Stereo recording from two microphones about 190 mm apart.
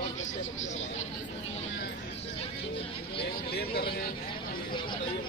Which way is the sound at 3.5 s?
55° left (ahead or behind).